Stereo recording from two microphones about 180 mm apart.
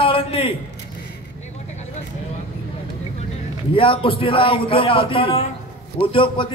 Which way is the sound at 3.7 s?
30° left (ahead or behind).